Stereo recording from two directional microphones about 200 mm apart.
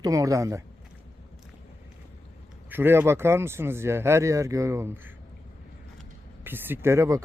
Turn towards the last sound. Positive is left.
turn(degrees=-15)  # may be behind; listen again after turning